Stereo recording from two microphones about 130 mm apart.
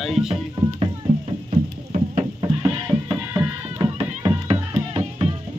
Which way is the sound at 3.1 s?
15° right (ahead or behind).